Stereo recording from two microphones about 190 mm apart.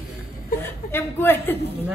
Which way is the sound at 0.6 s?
10° left (ahead or behind).